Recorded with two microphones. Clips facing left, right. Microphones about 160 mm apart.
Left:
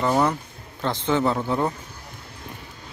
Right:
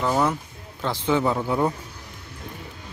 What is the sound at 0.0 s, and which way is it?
A man's voice, centre (ahead or behind).